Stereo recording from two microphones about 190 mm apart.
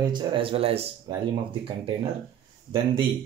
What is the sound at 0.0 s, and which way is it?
Speech, 25° right (ahead or behind).